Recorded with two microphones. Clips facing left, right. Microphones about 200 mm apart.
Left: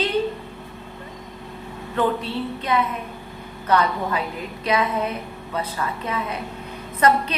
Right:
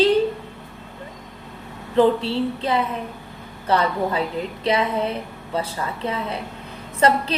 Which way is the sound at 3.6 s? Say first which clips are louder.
Right 1 dB; 30° right (ahead or behind).